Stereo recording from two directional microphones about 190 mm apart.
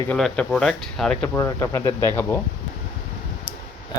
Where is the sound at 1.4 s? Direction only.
15° left (ahead or behind).